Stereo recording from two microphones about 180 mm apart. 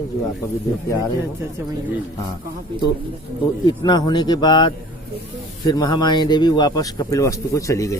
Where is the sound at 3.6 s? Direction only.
25° left (ahead or behind).